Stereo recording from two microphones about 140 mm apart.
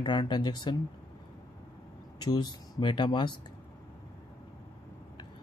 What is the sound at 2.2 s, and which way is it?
Speech, 30° left (ahead or behind).